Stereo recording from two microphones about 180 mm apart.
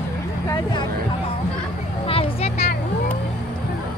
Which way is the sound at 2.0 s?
30° left (ahead or behind).